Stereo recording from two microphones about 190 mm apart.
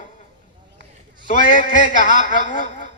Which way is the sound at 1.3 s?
45° left (ahead or behind).